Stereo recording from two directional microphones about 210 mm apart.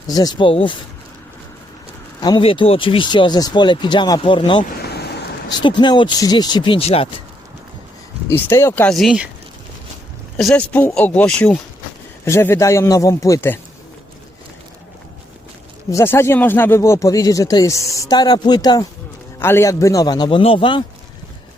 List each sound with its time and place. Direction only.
0.1 s speech: 20° left (ahead or behind)
2.2 s speech: 20° left (ahead or behind)
4.8 s a sound: 50° left (ahead or behind)
5.5 s speech: 20° left (ahead or behind)
8.3 s speech: 10° left (ahead or behind)
10.3 s speech: 5° left (ahead or behind)
15.9 s speech: 15° left (ahead or behind)